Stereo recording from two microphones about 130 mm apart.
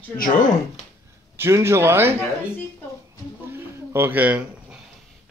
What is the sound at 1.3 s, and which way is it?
Speech, 20° right (ahead or behind).